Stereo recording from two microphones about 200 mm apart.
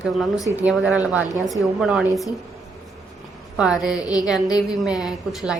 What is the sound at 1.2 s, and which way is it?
Speech, 40° right (ahead or behind).